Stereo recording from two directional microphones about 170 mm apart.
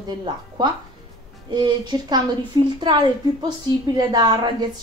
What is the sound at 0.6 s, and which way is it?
A woman's voice, 25° right (ahead or behind).